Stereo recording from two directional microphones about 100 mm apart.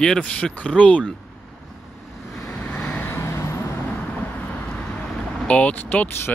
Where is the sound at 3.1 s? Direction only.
25° left (ahead or behind).